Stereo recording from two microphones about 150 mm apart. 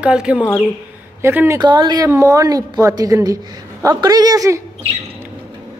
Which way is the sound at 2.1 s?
20° right (ahead or behind).